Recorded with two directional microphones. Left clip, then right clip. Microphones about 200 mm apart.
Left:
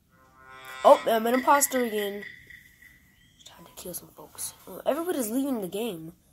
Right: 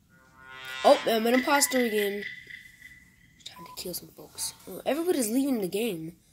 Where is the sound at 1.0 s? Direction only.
20° right (ahead or behind).